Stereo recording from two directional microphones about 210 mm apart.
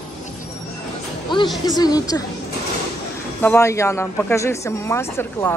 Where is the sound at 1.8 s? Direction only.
20° left (ahead or behind).